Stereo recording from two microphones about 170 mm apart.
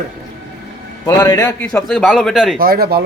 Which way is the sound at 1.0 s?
20° left (ahead or behind).